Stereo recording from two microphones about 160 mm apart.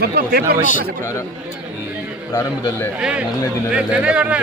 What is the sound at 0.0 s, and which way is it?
Speech, 80° right.